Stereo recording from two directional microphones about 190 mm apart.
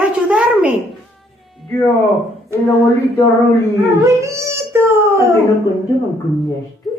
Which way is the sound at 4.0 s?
15° right (ahead or behind).